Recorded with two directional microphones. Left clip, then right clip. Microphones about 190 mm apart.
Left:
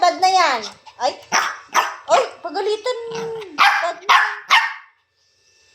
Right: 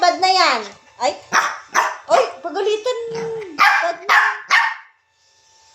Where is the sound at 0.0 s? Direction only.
15° right (ahead or behind).